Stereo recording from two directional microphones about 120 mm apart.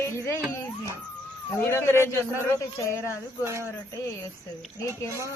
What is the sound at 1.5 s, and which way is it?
Speech, 20° left (ahead or behind).